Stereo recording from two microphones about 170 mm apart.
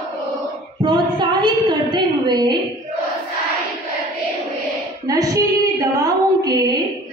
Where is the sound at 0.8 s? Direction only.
30° right (ahead or behind).